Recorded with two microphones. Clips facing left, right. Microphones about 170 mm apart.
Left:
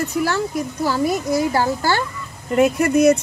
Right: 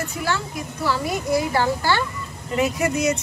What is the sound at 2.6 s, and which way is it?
Speech, 55° left (ahead or behind).